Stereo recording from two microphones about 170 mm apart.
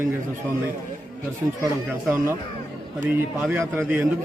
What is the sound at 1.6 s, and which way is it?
A man's voice, 15° right (ahead or behind).